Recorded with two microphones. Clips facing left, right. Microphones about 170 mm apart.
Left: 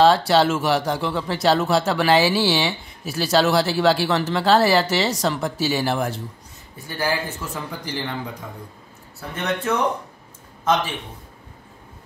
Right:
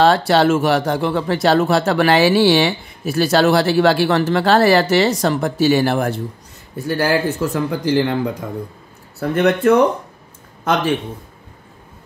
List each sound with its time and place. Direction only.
0.0 s speech: 55° right (ahead or behind)
6.9 s speech: 75° right (ahead or behind)
7.5 s speech: 90° right
9.2 s a man's voice: 60° right (ahead or behind)